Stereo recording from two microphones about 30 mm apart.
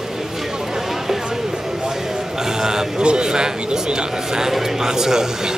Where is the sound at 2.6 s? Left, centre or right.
Centre.